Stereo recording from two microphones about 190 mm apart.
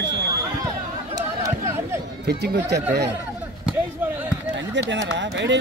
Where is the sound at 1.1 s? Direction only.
15° right (ahead or behind).